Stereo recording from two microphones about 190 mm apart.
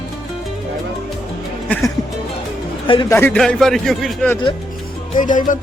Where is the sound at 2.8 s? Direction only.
25° left (ahead or behind).